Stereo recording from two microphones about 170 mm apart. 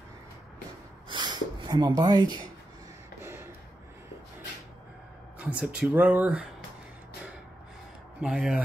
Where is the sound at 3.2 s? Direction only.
15° right (ahead or behind).